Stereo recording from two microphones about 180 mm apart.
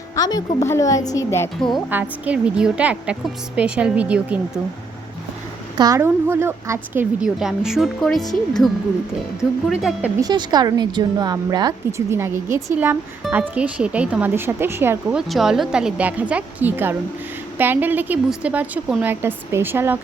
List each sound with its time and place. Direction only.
0.2 s a woman's voice: 20° left (ahead or behind)
1.7 s a woman's voice: 10° right (ahead or behind)
5.7 s a woman's voice: 20° right (ahead or behind); by 8.3 s centre (ahead or behind)
9.4 s speech: 5° right (ahead or behind)
10.2 s a woman's voice: 20° right (ahead or behind)
15.3 s a woman's voice: centre (ahead or behind)